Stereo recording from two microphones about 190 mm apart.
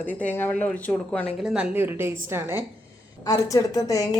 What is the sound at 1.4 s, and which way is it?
Speech, 5° right (ahead or behind).